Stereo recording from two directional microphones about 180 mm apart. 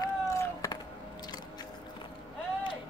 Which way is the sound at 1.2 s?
25° left (ahead or behind).